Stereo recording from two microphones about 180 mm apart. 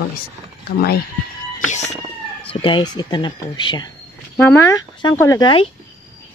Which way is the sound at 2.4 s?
30° left (ahead or behind).